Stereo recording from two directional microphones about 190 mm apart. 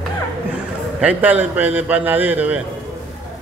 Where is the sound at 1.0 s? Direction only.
10° right (ahead or behind).